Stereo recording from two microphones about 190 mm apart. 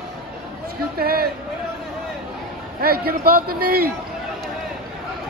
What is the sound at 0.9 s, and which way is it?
Speech, 55° right (ahead or behind).